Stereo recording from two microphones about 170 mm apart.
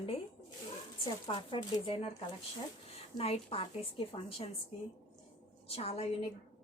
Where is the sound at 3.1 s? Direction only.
35° left (ahead or behind).